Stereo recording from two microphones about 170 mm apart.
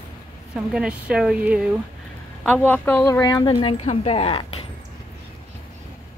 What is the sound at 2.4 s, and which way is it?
A woman's voice, 5° left (ahead or behind).